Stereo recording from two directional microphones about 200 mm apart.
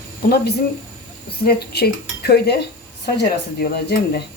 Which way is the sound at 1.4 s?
50° left (ahead or behind).